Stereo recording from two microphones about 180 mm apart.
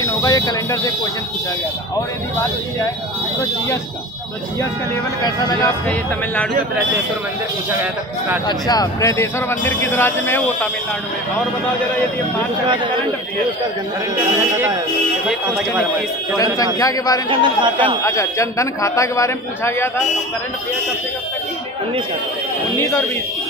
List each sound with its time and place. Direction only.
0.0 s a sound: 20° left (ahead or behind)
5.2 s a man's voice: 20° left (ahead or behind)
8.5 s speech: 20° left (ahead or behind)
12.6 s a man's voice: 25° right (ahead or behind)
15.2 s speech: 5° right (ahead or behind)
16.5 s a man's voice: 20° left (ahead or behind)
17.3 s a man's voice: 25° right (ahead or behind)
18.0 s speech: 15° left (ahead or behind)
22.8 s speech: 15° left (ahead or behind)